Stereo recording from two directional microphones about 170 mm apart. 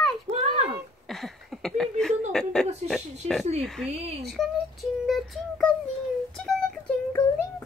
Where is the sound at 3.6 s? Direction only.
5° left (ahead or behind).